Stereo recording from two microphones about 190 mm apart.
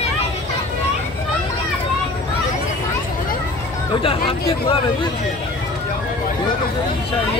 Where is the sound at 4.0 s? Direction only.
30° left (ahead or behind).